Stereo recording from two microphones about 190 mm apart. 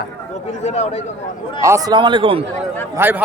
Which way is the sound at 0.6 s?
35° left (ahead or behind).